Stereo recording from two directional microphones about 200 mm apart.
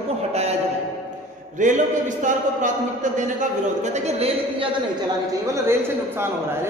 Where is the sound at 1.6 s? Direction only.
40° right (ahead or behind).